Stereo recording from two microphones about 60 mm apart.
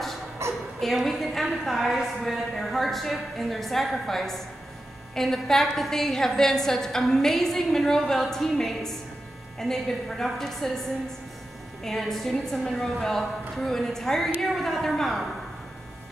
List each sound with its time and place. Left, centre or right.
0.4 s a sound: right
0.7 s a woman's voice: centre
11.8 s a woman's voice: centre